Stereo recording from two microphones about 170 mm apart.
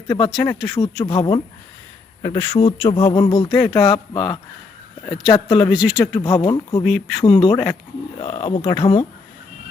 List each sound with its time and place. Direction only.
0.1 s speech: 25° left (ahead or behind)
5.7 s speech: 5° right (ahead or behind)
6.1 s speech: 25° left (ahead or behind)
6.8 s speech: centre (ahead or behind)
7.3 s speech: 30° left (ahead or behind)